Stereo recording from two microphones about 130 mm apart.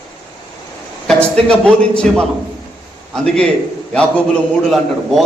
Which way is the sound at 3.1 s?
5° left (ahead or behind).